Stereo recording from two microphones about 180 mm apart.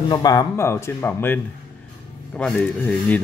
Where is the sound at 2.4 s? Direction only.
5° left (ahead or behind).